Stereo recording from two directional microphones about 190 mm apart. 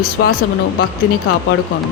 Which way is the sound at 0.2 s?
90° left.